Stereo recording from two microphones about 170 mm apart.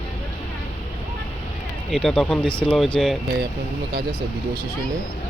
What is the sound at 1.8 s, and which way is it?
Speech, centre (ahead or behind).